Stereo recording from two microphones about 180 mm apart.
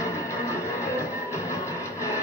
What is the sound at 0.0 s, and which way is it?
Music, 15° left (ahead or behind).